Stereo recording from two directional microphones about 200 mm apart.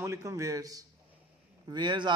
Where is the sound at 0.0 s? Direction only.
15° right (ahead or behind).